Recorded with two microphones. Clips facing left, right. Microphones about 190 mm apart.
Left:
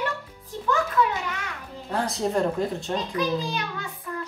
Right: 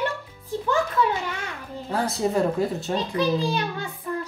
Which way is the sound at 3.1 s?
30° right (ahead or behind).